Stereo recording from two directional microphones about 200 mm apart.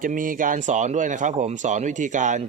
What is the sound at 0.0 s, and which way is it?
Speech, 40° right (ahead or behind).